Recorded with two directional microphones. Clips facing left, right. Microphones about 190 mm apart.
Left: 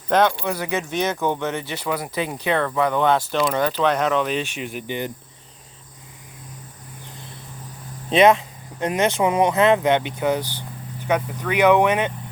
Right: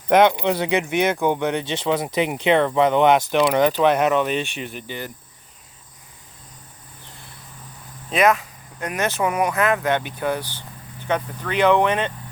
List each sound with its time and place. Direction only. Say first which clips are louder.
0.1 s speech: right 3 dB; 20° right (ahead or behind)
4.4 s speech: left 2 dB; 10° left (ahead or behind)
8.1 s speech: left 3 dB; 25° left (ahead or behind)